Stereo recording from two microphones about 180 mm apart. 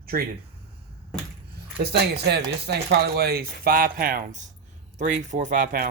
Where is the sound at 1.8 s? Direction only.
65° right (ahead or behind); by 5.9 s 50° right (ahead or behind).